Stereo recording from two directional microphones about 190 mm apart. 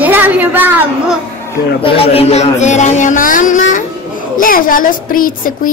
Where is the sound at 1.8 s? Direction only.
30° left (ahead or behind).